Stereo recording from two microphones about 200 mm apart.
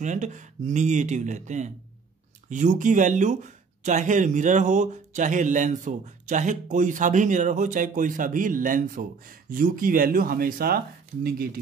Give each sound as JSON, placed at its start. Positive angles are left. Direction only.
{"t": 0.0, "sound": "speech", "side_deg": -35}